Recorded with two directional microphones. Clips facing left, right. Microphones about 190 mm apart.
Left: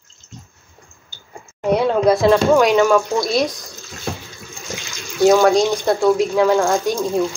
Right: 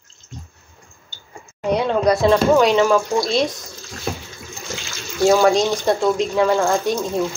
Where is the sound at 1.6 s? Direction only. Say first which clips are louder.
Left 2 dB; 5° left (ahead or behind).